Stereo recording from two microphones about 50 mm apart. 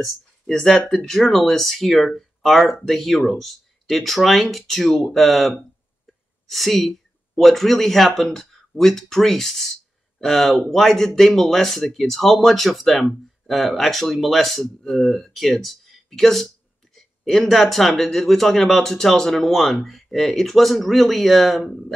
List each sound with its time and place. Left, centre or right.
0.0 s speech: centre